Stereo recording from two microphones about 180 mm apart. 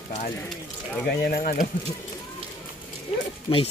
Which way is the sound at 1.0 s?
60° left (ahead or behind).